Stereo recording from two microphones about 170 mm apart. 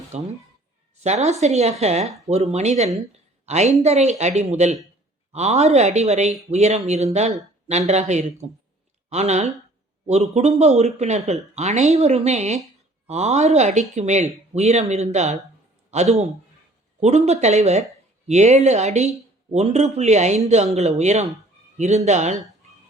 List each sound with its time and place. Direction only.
0.1 s a woman's voice: 40° right (ahead or behind)
10.6 s speech: 40° right (ahead or behind)